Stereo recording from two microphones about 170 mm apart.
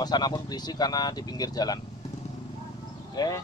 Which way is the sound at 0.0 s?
25° left (ahead or behind).